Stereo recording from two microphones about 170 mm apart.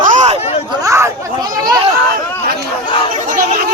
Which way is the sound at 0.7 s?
20° right (ahead or behind).